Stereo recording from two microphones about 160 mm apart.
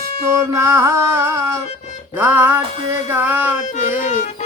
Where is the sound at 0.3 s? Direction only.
20° right (ahead or behind).